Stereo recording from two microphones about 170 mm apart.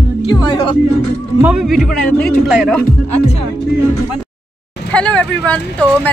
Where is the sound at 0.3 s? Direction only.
30° left (ahead or behind).